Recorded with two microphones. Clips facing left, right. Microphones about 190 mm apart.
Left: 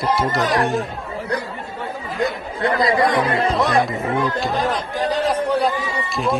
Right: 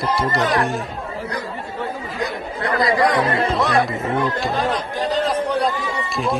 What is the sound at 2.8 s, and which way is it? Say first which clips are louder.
Speech: right 1 dB; 25° left (ahead or behind).